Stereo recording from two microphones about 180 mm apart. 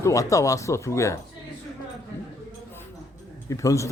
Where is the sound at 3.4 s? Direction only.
15° left (ahead or behind).